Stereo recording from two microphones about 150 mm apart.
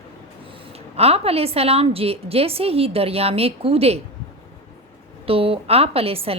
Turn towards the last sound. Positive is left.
turn(degrees=-40)  # may be behind; listen again after turning